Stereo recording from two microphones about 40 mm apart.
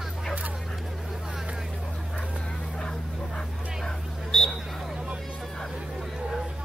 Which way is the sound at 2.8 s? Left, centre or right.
Centre.